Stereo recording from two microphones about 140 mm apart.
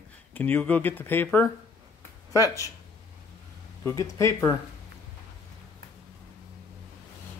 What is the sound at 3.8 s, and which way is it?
Speech, 20° left (ahead or behind).